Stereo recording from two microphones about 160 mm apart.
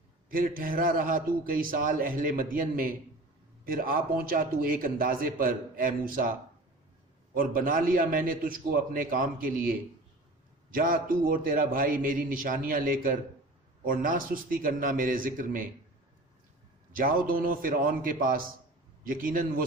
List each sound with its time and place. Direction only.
0.3 s a man's voice: 60° right (ahead or behind)
7.3 s a man's voice: 60° right (ahead or behind)
16.9 s a man's voice: 60° right (ahead or behind)